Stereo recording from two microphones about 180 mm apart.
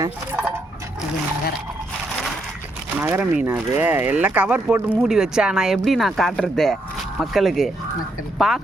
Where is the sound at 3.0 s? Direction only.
10° right (ahead or behind).